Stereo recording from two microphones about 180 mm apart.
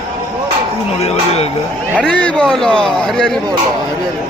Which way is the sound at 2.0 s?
5° left (ahead or behind).